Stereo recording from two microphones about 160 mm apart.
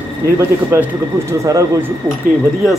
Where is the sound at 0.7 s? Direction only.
15° right (ahead or behind).